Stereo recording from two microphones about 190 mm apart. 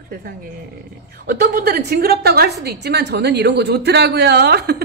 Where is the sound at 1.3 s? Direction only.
55° right (ahead or behind).